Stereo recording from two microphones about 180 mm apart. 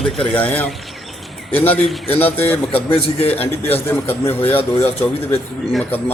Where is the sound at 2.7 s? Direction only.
35° left (ahead or behind).